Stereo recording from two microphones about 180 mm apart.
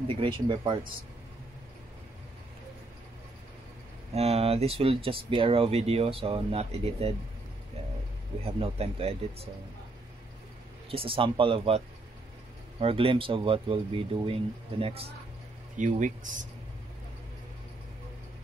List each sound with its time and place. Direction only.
0.1 s speech: 30° right (ahead or behind)
4.1 s speech: 35° right (ahead or behind)
8.5 s speech: 35° right (ahead or behind)
10.9 s speech: 30° right (ahead or behind)
15.7 s speech: 45° right (ahead or behind)